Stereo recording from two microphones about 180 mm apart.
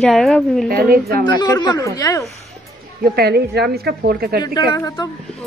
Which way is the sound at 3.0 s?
60° right (ahead or behind).